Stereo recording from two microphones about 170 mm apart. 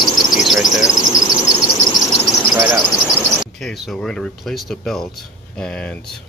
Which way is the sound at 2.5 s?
20° right (ahead or behind).